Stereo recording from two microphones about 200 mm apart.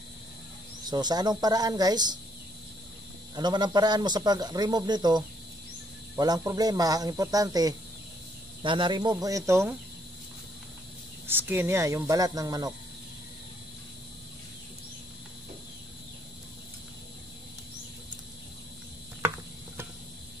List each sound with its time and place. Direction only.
0.8 s speech: 20° right (ahead or behind)
3.3 s speech: 20° right (ahead or behind)
11.2 s speech: 10° right (ahead or behind)